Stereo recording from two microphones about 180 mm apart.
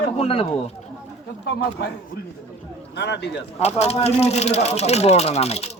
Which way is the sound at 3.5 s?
35° left (ahead or behind).